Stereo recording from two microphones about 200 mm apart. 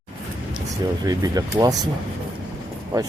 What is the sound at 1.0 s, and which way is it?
Speech, 20° right (ahead or behind).